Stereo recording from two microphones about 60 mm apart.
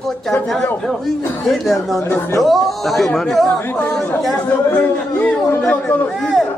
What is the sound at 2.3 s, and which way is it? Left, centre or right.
Speech, centre.